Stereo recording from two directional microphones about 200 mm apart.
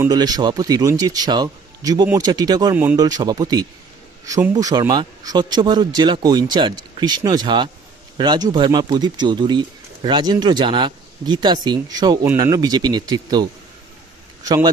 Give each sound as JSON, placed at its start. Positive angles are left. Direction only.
{"t": 0.0, "sound": "a man's voice", "side_deg": -20}